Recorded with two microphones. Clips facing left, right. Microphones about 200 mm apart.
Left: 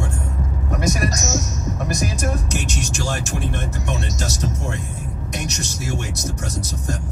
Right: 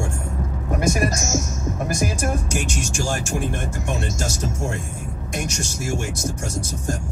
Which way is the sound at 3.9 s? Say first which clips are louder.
Right 2 dB; 50° right (ahead or behind).